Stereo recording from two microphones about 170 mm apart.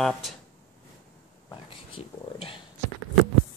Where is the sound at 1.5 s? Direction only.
30° left (ahead or behind).